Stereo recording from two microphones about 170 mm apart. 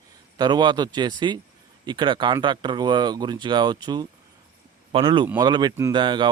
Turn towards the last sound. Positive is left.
turn(degrees=-25)  # may be behind; listen again after turning